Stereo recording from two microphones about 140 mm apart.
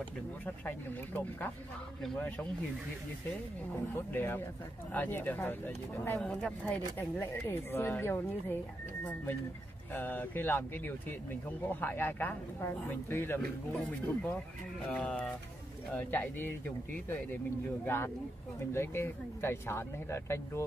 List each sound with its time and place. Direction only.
0.7 s speech: 10° left (ahead or behind)
3.9 s speech: 15° left (ahead or behind)
17.8 s speech: 15° left (ahead or behind)